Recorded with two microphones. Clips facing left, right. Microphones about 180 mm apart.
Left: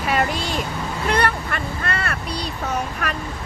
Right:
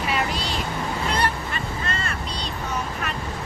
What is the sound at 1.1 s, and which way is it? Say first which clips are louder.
Speech: left 7 dB; 65° left (ahead or behind).